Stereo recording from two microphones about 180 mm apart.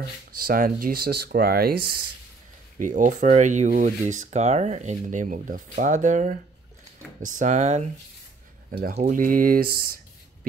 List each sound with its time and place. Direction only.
0.4 s speech: 50° right (ahead or behind)
2.8 s speech: 45° right (ahead or behind)
9.1 s speech: 50° right (ahead or behind)